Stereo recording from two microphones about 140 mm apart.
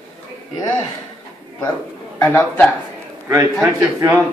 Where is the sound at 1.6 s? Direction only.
20° left (ahead or behind).